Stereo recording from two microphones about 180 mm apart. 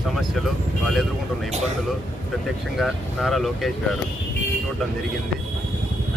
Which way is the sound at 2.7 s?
Centre (ahead or behind).